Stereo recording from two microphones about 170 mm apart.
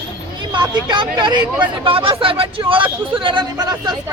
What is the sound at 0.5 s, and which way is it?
Speech, 25° right (ahead or behind).